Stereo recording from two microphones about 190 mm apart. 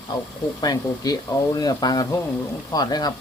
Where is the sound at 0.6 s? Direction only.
20° left (ahead or behind).